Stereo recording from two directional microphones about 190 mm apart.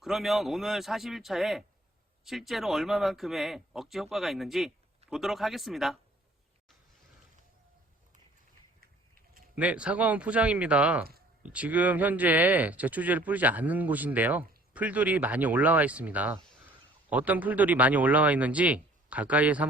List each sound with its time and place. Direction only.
0.0 s speech: centre (ahead or behind)
9.6 s speech: 5° right (ahead or behind)